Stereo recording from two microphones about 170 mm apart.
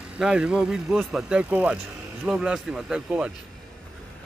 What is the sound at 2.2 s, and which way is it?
Speech, 5° right (ahead or behind).